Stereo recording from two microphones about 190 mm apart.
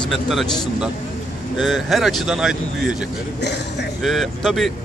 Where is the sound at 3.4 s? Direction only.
65° left (ahead or behind).